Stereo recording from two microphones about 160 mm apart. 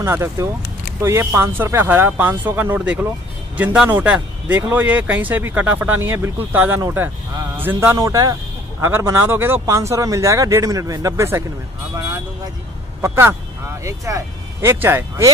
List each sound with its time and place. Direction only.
0.0 s speech: 15° right (ahead or behind)
13.0 s speech: 15° right (ahead or behind)